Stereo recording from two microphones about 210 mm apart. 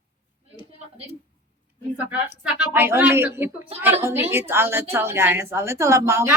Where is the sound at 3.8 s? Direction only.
10° right (ahead or behind).